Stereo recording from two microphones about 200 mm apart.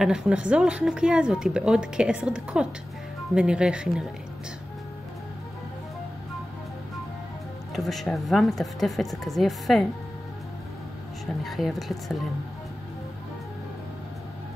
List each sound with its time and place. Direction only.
0.0 s speech: 5° right (ahead or behind)
7.7 s speech: centre (ahead or behind)
11.4 s speech: centre (ahead or behind)